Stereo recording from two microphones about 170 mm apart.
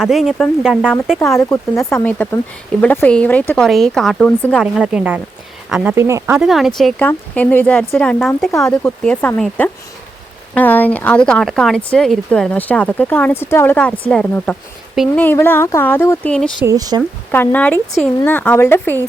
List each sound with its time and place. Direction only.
0.0 s speech: centre (ahead or behind)
1.4 s speech: 15° left (ahead or behind); by 5.9 s 5° right (ahead or behind)
5.9 s speech: 15° right (ahead or behind)
6.4 s speech: centre (ahead or behind)
15.2 s speech: 10° left (ahead or behind)
16.6 s speech: 20° right (ahead or behind)
17.3 s speech: 10° left (ahead or behind)